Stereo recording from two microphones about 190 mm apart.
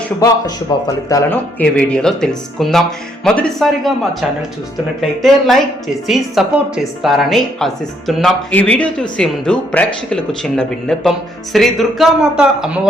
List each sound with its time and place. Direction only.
0.2 s a man's voice: 20° left (ahead or behind); by 12.9 s 5° right (ahead or behind)